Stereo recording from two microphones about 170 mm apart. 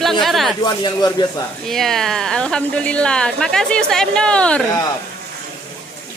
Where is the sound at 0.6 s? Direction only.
25° left (ahead or behind).